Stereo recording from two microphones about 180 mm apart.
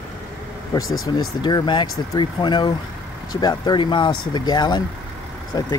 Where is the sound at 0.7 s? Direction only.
15° left (ahead or behind).